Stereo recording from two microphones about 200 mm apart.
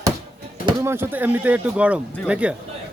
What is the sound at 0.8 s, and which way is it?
Speech, 10° right (ahead or behind).